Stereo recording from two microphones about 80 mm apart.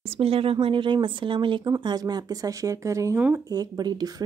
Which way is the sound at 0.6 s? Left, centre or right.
Right.